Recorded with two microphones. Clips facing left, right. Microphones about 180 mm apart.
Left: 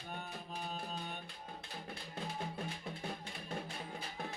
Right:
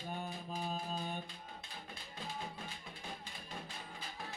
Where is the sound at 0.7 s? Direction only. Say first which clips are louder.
Right 3 dB; 35° right (ahead or behind).